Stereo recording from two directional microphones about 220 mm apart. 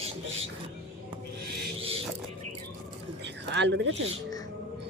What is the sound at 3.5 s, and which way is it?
Speech, 55° right (ahead or behind).